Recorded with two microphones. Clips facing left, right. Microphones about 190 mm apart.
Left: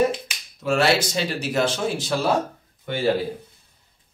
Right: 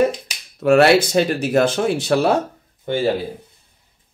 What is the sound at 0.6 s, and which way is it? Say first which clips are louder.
Speech: right 8 dB; 60° right (ahead or behind).